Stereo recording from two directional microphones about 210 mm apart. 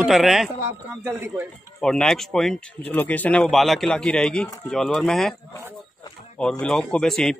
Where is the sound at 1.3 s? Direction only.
Centre (ahead or behind).